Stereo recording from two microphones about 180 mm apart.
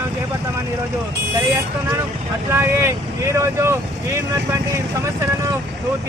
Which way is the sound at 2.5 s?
15° right (ahead or behind).